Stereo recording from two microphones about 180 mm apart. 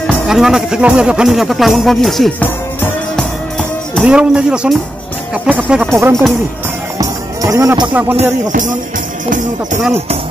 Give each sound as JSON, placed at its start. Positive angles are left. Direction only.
{"t": 0.0, "sound": "speech", "side_deg": -5}
{"t": 7.0, "sound": "music", "side_deg": -20}
{"t": 7.9, "sound": "speech", "side_deg": -10}
{"t": 8.2, "sound": "music", "side_deg": -45}